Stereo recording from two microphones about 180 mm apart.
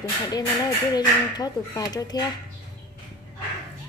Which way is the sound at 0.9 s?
20° left (ahead or behind).